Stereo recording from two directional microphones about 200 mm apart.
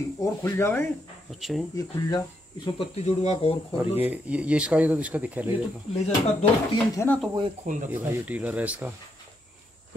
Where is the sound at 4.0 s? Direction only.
5° right (ahead or behind).